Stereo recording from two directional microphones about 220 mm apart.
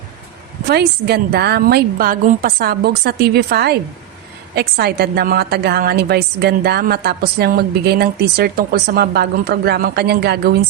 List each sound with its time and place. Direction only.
0.7 s a woman's voice: 45° right (ahead or behind)